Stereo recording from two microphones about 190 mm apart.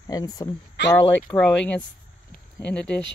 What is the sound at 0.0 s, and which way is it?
Speech, 20° left (ahead or behind).